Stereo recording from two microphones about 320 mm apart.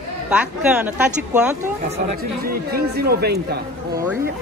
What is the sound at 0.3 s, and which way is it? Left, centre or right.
Speech, centre.